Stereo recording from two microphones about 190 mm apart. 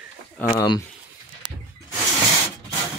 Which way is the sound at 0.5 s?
20° left (ahead or behind).